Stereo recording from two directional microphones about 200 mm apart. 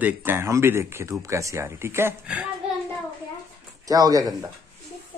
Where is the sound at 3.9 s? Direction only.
20° right (ahead or behind).